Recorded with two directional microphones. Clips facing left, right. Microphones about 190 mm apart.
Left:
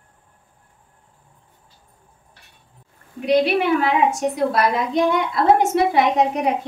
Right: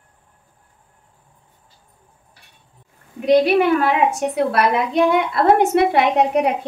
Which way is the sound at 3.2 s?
45° right (ahead or behind).